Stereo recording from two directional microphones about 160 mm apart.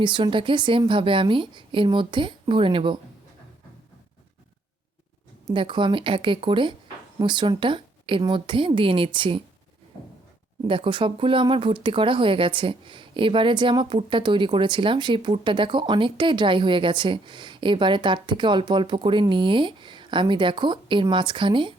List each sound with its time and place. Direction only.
0.0 s speech: 30° right (ahead or behind)
5.5 s speech: 30° right (ahead or behind)
10.7 s speech: 30° right (ahead or behind)